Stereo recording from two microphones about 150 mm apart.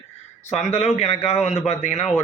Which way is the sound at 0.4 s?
50° left (ahead or behind).